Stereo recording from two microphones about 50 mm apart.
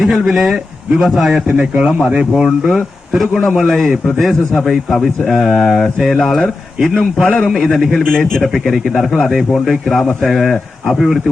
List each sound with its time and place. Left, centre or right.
0.0 s speech: centre
1.5 s a man's voice: centre
7.2 s a man's voice: left
7.9 s speech: centre